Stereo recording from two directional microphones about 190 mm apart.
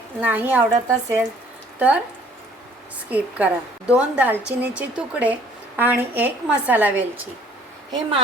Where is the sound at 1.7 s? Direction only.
5° right (ahead or behind).